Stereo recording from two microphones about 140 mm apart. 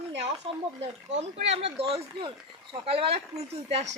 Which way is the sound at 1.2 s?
50° right (ahead or behind).